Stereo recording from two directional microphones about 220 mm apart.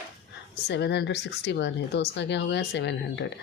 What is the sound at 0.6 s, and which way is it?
Speech, 50° left (ahead or behind).